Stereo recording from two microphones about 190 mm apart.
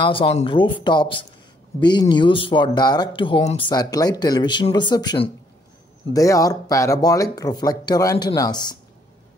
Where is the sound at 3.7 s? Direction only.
20° left (ahead or behind).